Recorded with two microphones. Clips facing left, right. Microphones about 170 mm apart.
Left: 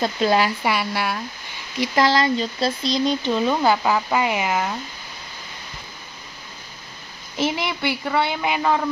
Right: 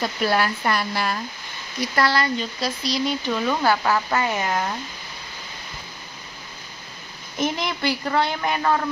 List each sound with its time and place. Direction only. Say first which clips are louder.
0.0 s speech: left 3 dB; 20° left (ahead or behind)
0.7 s speech: left 1 dB; 5° left (ahead or behind)
2.0 s speech: left 3 dB; 20° left (ahead or behind)
7.4 s speech: left 1 dB; 5° left (ahead or behind)